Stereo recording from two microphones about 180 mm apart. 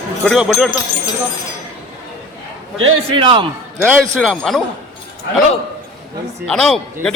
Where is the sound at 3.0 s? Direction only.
30° right (ahead or behind).